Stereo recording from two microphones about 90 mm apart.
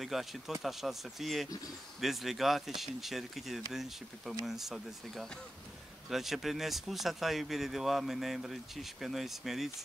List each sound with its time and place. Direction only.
0.0 s speech: centre (ahead or behind)